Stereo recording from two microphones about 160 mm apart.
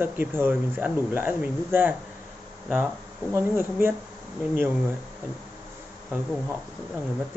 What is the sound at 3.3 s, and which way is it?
Speech, 15° right (ahead or behind).